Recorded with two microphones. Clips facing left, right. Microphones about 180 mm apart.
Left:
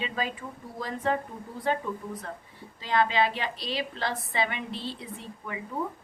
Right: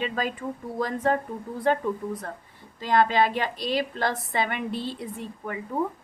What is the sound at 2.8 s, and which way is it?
A woman's voice, 45° right (ahead or behind).